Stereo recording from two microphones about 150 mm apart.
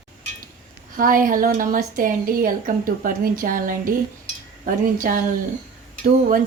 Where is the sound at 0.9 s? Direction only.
65° right (ahead or behind).